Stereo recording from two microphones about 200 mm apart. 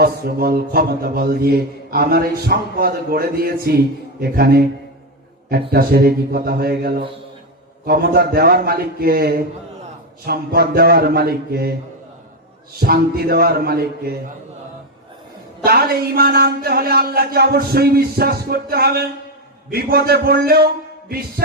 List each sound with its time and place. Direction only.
0.0 s mantra: 50° right (ahead or behind)
12.8 s mantra: 50° right (ahead or behind)
15.6 s mantra: 50° right (ahead or behind)